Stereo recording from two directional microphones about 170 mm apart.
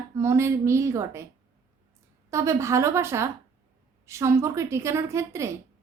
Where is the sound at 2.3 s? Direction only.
15° right (ahead or behind).